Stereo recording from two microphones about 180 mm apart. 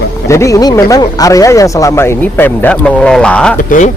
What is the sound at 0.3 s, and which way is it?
Speech, 15° left (ahead or behind).